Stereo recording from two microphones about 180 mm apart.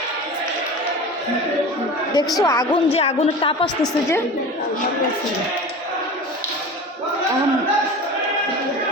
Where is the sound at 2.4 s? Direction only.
20° left (ahead or behind).